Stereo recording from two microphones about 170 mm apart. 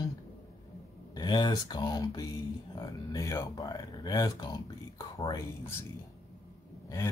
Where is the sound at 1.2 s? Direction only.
25° left (ahead or behind).